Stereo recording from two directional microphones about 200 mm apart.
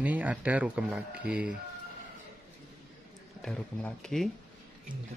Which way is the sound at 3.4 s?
5° left (ahead or behind).